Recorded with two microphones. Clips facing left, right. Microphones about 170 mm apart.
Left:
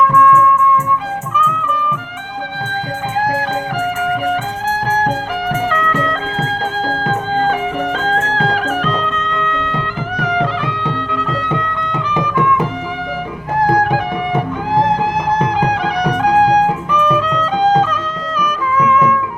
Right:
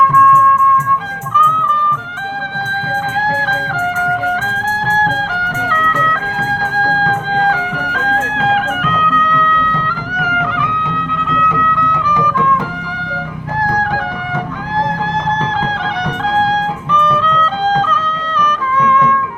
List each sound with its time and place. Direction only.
5.0 s music: 20° left (ahead or behind)
10.2 s music: 30° left (ahead or behind)
13.6 s music: 20° left (ahead or behind)